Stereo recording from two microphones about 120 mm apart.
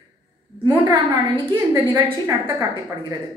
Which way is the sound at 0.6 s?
15° right (ahead or behind).